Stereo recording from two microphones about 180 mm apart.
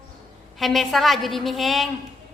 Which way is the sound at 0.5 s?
Centre (ahead or behind).